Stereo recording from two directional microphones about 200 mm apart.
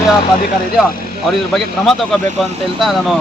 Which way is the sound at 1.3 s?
Centre (ahead or behind).